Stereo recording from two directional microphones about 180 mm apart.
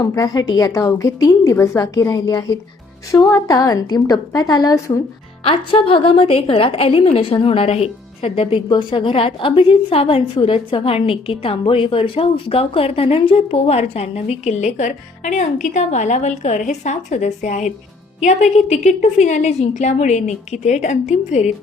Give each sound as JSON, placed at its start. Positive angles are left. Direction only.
{"t": 0.0, "sound": "a woman's voice", "side_deg": 20}